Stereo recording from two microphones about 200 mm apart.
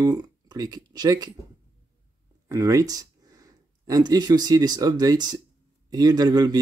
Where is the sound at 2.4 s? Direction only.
15° right (ahead or behind).